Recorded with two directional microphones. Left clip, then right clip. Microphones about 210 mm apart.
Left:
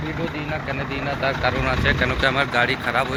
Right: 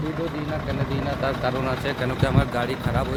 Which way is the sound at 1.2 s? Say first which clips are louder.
Left 4 dB; 20° right (ahead or behind).